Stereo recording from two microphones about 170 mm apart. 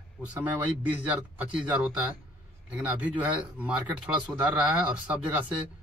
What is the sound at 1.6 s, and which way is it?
Speech, 5° right (ahead or behind).